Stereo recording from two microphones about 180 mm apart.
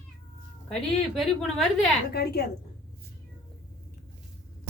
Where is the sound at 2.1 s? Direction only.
60° left (ahead or behind).